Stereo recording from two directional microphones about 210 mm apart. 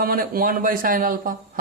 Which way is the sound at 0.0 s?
45° right (ahead or behind).